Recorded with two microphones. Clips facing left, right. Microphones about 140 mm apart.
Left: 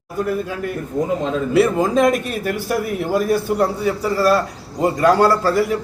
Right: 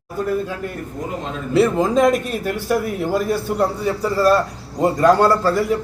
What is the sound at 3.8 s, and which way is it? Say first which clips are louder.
A man's voice: even; 5° left (ahead or behind).